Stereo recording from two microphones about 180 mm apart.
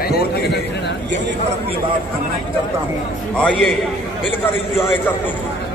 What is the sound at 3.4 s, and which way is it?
Speech, 5° left (ahead or behind).